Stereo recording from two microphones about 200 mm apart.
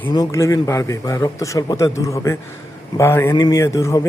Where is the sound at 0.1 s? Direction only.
15° left (ahead or behind).